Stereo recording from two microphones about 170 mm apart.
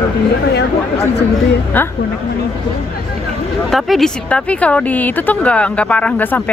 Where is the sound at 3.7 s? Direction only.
Centre (ahead or behind).